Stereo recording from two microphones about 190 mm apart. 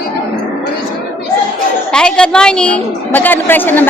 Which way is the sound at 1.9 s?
5° left (ahead or behind).